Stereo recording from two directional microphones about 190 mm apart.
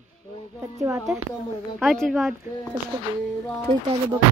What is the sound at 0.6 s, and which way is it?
Speech, 15° right (ahead or behind).